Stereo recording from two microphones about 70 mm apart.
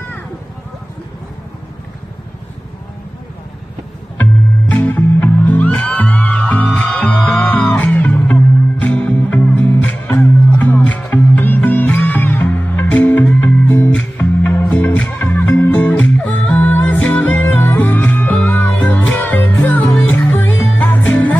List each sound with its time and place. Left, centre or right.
4.2 s music: left
10.0 s music: left
15.7 s music: left
19.5 s music: left
20.2 s music: left